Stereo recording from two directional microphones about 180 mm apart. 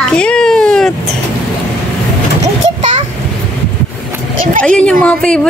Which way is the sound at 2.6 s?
40° right (ahead or behind).